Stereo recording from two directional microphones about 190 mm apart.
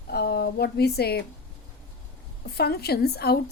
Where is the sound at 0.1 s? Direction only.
55° left (ahead or behind).